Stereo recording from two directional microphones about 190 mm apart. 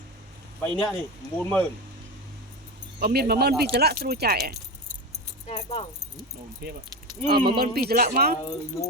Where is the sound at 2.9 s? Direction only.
55° right (ahead or behind).